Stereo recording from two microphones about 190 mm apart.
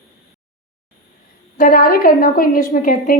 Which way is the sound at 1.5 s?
50° left (ahead or behind).